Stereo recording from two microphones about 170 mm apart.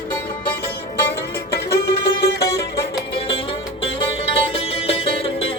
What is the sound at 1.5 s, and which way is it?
Music, 70° left (ahead or behind).